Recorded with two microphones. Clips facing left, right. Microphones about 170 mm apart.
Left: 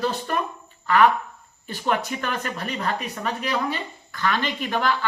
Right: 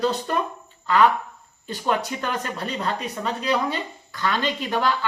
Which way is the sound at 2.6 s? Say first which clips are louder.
Even; 25° right (ahead or behind).